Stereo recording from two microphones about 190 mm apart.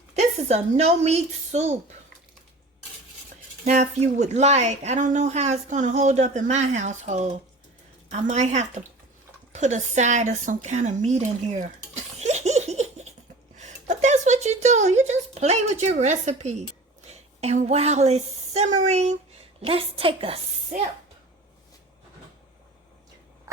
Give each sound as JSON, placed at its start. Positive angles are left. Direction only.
{"t": 0.1, "sound": "a woman's voice", "side_deg": -35}
{"t": 3.7, "sound": "a woman's voice", "side_deg": -40}
{"t": 13.6, "sound": "a sound", "side_deg": -40}
{"t": 17.1, "sound": "a woman's voice", "side_deg": -35}